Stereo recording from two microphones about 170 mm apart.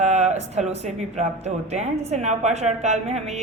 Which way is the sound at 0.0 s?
40° right (ahead or behind).